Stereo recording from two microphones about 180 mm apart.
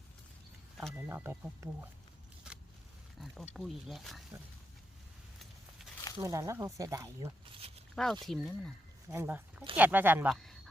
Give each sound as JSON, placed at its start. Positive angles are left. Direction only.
{"t": 0.8, "sound": "speech", "side_deg": -5}
{"t": 3.2, "sound": "speech", "side_deg": 0}
{"t": 6.1, "sound": "speech", "side_deg": -15}
{"t": 7.9, "sound": "speech", "side_deg": 0}
{"t": 9.0, "sound": "speech", "side_deg": -10}
{"t": 10.3, "sound": "a sound", "side_deg": 0}